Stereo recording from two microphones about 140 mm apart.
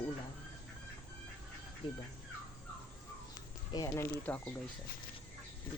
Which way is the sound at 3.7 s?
25° left (ahead or behind).